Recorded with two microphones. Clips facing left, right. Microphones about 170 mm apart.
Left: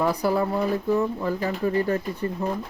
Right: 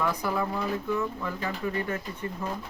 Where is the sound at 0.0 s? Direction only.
35° left (ahead or behind).